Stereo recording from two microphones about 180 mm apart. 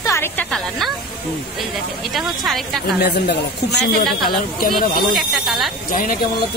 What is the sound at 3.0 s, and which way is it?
Speech, 65° left (ahead or behind).